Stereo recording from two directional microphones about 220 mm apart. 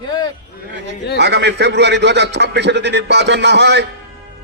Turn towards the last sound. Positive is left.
turn(degrees=-50)  # may be behind; listen again after turning